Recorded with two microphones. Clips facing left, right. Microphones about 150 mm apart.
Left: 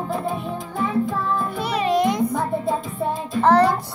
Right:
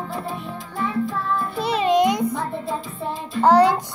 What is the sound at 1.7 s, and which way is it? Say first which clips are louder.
Music: right 2 dB; 25° right (ahead or behind).